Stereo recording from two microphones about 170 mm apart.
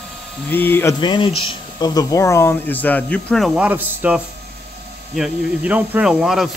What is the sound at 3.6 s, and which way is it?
Speech, 10° right (ahead or behind).